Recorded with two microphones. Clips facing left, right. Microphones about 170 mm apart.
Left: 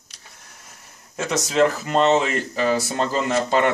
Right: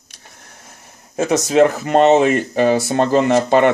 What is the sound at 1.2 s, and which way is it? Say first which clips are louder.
Speech: right 6 dB; 50° right (ahead or behind).